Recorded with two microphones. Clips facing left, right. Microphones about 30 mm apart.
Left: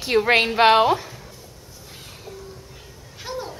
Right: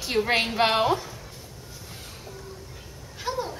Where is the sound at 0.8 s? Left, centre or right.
Left.